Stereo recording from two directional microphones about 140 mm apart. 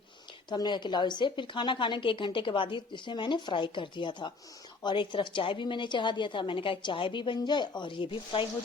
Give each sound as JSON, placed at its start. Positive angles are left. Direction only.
{"t": 0.5, "sound": "speech", "side_deg": 30}